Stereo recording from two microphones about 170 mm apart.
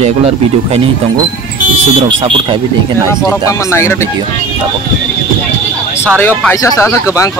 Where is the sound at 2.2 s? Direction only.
30° right (ahead or behind).